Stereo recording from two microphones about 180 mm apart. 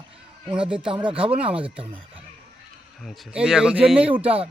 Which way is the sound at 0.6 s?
30° right (ahead or behind).